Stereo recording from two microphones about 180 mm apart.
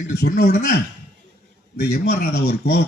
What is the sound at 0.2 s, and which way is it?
Speech, 60° left (ahead or behind).